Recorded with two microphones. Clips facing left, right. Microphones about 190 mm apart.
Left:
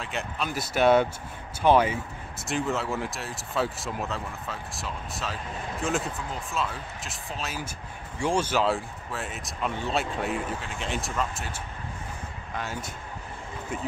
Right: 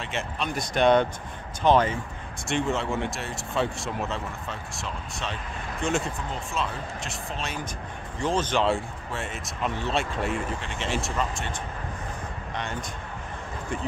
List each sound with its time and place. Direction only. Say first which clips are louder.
0.0 s speech: right 1 dB; centre (ahead or behind)